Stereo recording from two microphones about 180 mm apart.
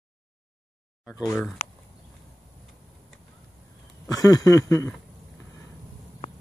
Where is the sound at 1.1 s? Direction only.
20° left (ahead or behind).